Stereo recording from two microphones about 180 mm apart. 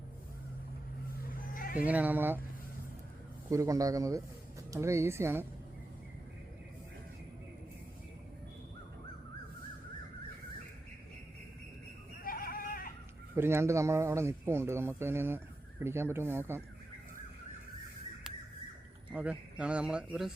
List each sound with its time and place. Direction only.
1.3 s a sound: 50° left (ahead or behind)
1.8 s a man's voice: 10° right (ahead or behind)
3.5 s a man's voice: 15° right (ahead or behind)
12.2 s goat: 55° left (ahead or behind)
13.3 s a man's voice: 15° right (ahead or behind)
19.1 s a man's voice: 5° right (ahead or behind)